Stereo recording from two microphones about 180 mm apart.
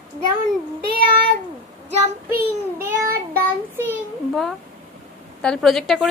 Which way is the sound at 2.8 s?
15° right (ahead or behind).